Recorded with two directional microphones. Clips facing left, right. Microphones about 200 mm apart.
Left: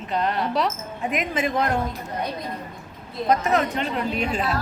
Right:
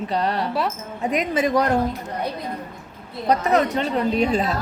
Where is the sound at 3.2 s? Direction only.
35° right (ahead or behind).